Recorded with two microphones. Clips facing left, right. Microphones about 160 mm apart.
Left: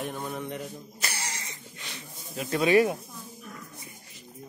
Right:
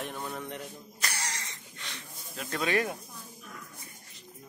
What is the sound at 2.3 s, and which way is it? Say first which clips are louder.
Speech: left 8 dB; 10° left (ahead or behind).